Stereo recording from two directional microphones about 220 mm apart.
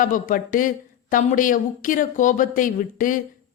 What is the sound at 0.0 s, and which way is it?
Speech, 40° left (ahead or behind).